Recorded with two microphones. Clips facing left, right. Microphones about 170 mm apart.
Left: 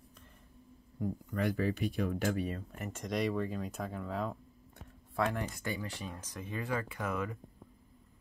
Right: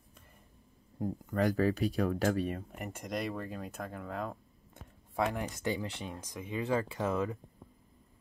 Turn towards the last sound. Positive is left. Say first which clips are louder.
# right 4 dB
turn(degrees=-30)  # may be behind; listen again after turning